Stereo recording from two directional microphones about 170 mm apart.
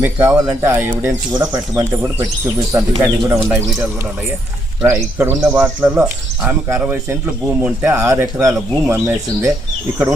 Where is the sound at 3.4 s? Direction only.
15° right (ahead or behind).